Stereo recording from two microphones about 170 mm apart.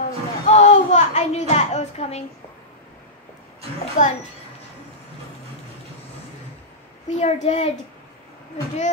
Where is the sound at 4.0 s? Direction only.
45° left (ahead or behind).